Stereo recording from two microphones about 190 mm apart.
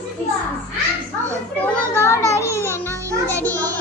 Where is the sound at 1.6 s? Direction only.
15° left (ahead or behind).